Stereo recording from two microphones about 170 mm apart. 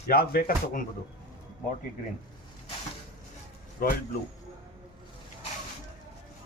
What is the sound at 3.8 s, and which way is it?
Speech, 60° left (ahead or behind).